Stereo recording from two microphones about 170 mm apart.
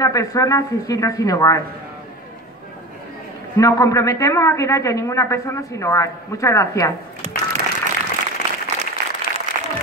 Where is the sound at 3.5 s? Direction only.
20° left (ahead or behind).